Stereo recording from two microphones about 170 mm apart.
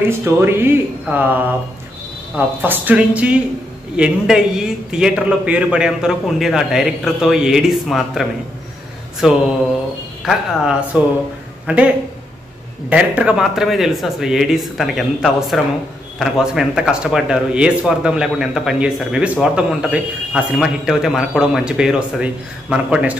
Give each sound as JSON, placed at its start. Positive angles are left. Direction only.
{"t": 0.0, "sound": "a man's voice", "side_deg": -15}
{"t": 12.9, "sound": "speech", "side_deg": -5}